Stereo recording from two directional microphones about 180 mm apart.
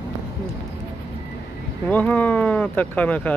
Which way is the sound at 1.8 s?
10° left (ahead or behind).